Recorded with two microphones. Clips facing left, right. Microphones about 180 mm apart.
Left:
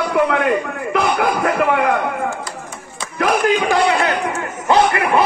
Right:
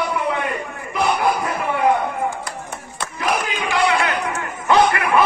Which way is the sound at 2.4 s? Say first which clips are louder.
Even; 60° right (ahead or behind).